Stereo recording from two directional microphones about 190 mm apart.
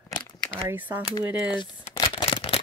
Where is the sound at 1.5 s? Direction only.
25° left (ahead or behind).